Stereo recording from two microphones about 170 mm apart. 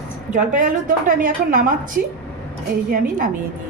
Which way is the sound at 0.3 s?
50° right (ahead or behind).